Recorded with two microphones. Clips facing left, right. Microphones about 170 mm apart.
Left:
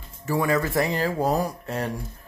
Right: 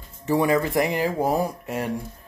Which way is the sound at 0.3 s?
20° right (ahead or behind).